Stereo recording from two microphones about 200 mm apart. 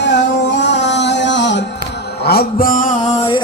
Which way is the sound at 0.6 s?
60° left (ahead or behind).